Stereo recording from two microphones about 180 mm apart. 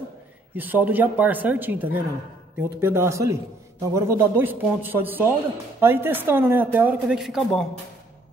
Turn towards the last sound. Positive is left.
turn(degrees=0)  # may be behind; listen again after turning